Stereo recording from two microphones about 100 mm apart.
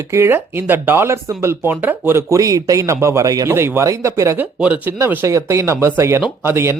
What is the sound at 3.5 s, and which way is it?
Speech, 25° right (ahead or behind).